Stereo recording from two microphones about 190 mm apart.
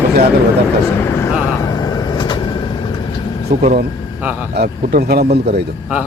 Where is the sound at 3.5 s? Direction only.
55° right (ahead or behind).